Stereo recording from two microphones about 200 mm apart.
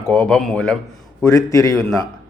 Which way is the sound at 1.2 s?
15° left (ahead or behind).